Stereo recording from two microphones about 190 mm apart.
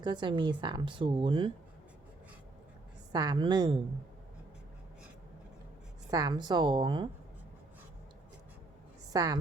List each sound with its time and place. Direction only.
0.0 s speech: 25° right (ahead or behind)
3.1 s speech: 20° right (ahead or behind)
6.1 s speech: 20° right (ahead or behind)
9.1 s speech: 20° right (ahead or behind)